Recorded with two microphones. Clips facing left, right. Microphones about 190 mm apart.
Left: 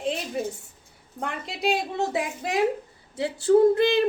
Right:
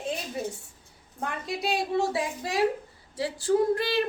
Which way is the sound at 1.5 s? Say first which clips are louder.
Left 2 dB; 20° left (ahead or behind).